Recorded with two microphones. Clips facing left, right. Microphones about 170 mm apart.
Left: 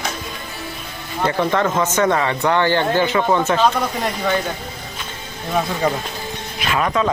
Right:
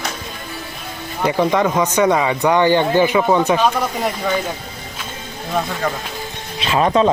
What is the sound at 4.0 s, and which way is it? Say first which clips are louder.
Speech: even; 5° right (ahead or behind).